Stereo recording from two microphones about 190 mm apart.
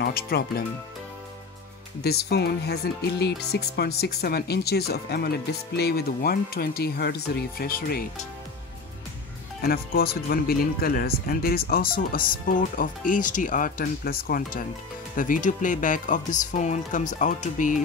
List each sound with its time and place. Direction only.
0.0 s speech: 55° left (ahead or behind)
2.0 s speech: 55° left (ahead or behind)
9.6 s speech: 55° left (ahead or behind)